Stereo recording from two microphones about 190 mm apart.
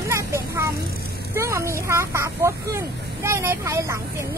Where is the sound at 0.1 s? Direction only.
15° right (ahead or behind).